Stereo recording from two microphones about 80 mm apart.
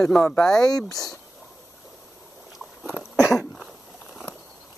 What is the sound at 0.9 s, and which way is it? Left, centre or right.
Speech, left.